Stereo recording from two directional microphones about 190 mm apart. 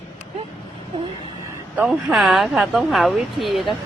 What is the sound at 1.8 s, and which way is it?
Speech, 5° right (ahead or behind).